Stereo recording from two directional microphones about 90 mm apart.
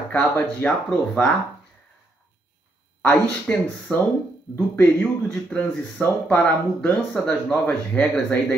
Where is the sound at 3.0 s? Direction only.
20° left (ahead or behind).